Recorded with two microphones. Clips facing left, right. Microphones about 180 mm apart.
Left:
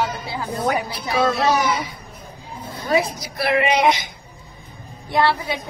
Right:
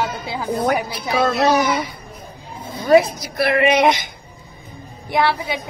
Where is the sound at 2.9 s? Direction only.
55° right (ahead or behind).